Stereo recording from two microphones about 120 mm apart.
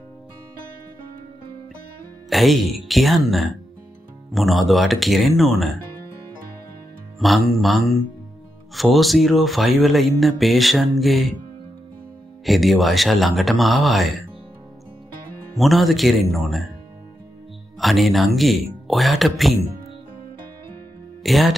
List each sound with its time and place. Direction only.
2.2 s speech: centre (ahead or behind)
7.2 s speech: centre (ahead or behind)
12.4 s speech: centre (ahead or behind)
15.5 s speech: centre (ahead or behind)
17.7 s speech: centre (ahead or behind)
21.2 s speech: centre (ahead or behind)